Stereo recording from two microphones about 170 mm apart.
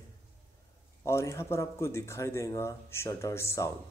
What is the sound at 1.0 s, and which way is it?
Speech, 15° left (ahead or behind).